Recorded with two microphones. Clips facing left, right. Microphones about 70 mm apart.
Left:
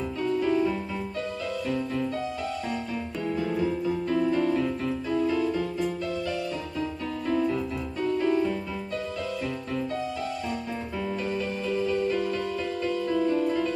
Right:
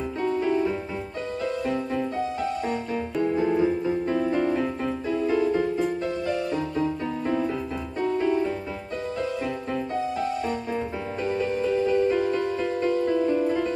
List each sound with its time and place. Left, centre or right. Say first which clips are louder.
0.2 s music: right 1 dB; right
3.2 s music: right 6 dB; right
7.2 s music: left 2 dB; right
11.2 s music: right 4 dB; right